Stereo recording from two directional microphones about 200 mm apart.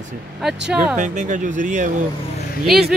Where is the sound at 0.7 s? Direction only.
5° right (ahead or behind).